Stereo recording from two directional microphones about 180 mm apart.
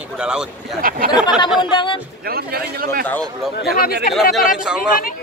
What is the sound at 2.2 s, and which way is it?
Speech, 60° right (ahead or behind).